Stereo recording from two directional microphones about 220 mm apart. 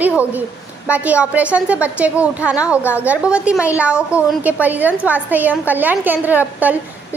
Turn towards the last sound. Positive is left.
turn(degrees=-5)  # may be behind; listen again after turning